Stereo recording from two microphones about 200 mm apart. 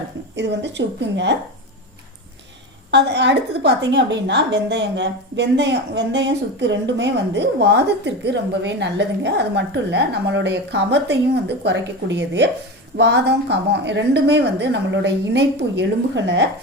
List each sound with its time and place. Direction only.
0.3 s a woman's voice: 60° right (ahead or behind)
2.9 s a woman's voice: 60° right (ahead or behind)